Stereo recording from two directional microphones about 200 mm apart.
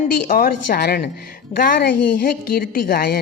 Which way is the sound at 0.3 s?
45° left (ahead or behind).